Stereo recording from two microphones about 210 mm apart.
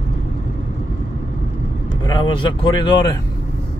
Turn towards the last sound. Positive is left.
turn(degrees=20)  # may be behind; listen again after turning